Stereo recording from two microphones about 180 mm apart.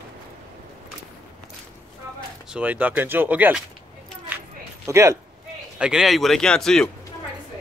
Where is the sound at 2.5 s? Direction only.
10° right (ahead or behind).